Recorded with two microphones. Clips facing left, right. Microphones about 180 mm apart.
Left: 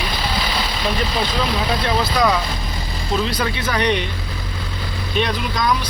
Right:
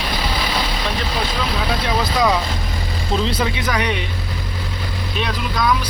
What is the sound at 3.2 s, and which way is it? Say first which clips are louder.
Speech: right 1 dB; 20° right (ahead or behind).